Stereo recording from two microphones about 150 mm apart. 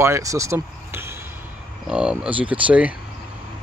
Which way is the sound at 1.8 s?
5° right (ahead or behind).